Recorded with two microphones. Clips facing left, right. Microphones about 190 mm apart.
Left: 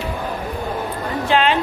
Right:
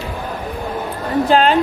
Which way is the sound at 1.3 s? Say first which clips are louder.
Right 3 dB; 40° right (ahead or behind).